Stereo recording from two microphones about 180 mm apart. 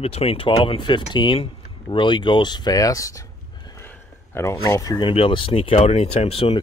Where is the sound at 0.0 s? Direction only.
35° left (ahead or behind).